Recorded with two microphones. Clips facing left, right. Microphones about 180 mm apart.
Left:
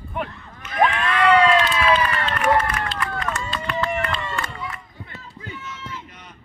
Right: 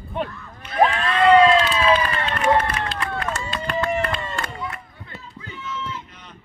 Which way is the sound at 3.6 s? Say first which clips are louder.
Right 3 dB; 35° right (ahead or behind).